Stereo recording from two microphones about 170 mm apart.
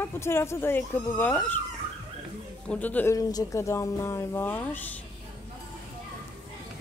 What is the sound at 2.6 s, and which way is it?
A woman's voice, 5° left (ahead or behind).